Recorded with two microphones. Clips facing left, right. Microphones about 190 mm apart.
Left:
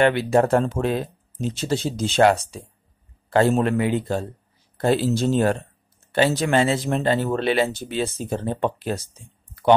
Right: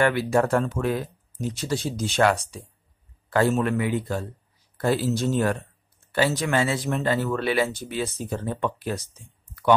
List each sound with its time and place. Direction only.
0.0 s speech: 25° left (ahead or behind)